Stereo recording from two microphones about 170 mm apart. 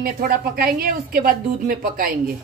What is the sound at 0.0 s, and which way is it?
A woman's voice, 60° right (ahead or behind).